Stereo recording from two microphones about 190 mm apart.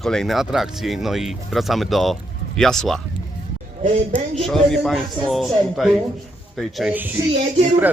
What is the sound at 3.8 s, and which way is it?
Speech, 40° right (ahead or behind).